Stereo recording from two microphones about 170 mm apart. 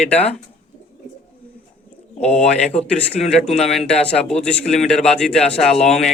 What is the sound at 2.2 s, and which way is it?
Speech, 40° left (ahead or behind).